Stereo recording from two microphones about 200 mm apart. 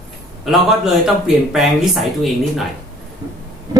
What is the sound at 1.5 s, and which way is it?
Speech, centre (ahead or behind).